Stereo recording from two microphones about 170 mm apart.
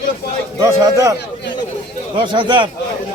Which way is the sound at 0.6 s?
20° right (ahead or behind).